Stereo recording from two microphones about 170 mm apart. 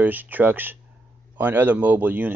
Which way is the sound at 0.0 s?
10° right (ahead or behind).